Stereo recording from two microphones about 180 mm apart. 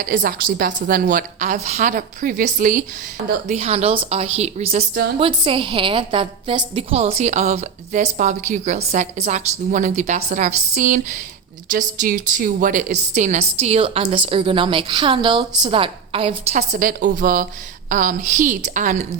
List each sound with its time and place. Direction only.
0.1 s a woman's voice: 65° right (ahead or behind)
3.4 s a woman's voice: 40° right (ahead or behind)